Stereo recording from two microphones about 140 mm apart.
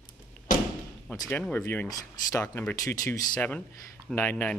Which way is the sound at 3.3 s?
10° left (ahead or behind).